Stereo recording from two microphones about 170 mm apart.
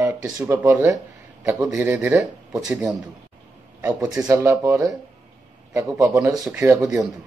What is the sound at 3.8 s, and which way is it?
Speech, 15° right (ahead or behind).